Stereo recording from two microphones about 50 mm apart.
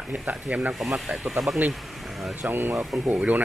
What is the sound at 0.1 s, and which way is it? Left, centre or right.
Speech, right.